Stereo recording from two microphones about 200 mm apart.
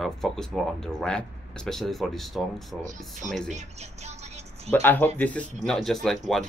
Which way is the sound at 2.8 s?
40° right (ahead or behind).